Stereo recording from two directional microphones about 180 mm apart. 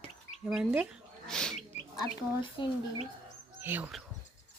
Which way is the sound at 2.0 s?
25° left (ahead or behind).